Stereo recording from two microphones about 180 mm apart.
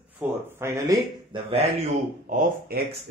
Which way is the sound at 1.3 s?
30° right (ahead or behind).